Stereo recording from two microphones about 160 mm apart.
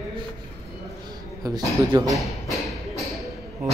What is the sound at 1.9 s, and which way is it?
Speech, 25° right (ahead or behind).